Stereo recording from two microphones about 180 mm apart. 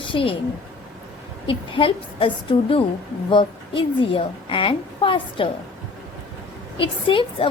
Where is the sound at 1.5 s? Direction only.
30° left (ahead or behind).